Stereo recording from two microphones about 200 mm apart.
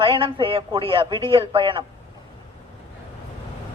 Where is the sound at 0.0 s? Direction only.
25° right (ahead or behind).